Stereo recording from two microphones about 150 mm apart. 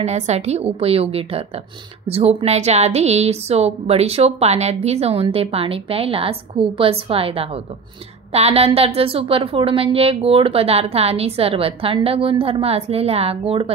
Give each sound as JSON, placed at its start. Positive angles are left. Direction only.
{"t": 0.0, "sound": "a woman's voice", "side_deg": -45}